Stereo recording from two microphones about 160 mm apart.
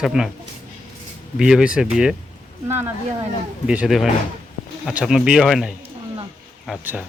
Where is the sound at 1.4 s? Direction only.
5° right (ahead or behind).